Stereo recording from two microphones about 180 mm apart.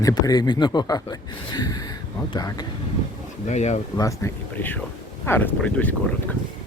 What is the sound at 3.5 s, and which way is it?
Speech, 40° left (ahead or behind).